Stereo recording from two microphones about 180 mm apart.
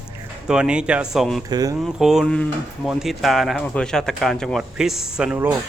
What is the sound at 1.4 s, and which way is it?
Speech, 20° right (ahead or behind).